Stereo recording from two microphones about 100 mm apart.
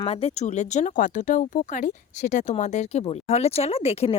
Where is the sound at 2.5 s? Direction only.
80° left.